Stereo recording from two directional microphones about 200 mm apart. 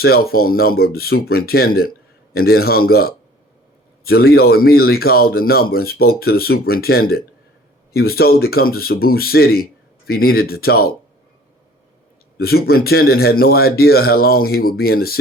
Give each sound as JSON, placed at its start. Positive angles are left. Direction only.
{"t": 0.0, "sound": "a man's voice", "side_deg": 50}
{"t": 12.4, "sound": "a man's voice", "side_deg": 50}